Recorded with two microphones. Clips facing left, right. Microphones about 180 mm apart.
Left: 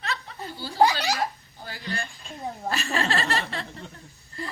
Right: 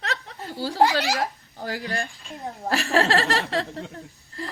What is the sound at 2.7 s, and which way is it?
A woman's voice, 70° right (ahead or behind).